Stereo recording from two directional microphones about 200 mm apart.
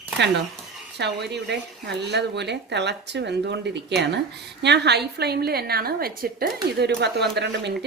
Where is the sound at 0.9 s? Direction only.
55° right (ahead or behind).